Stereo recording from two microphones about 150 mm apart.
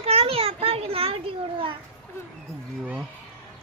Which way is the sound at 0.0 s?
40° right (ahead or behind).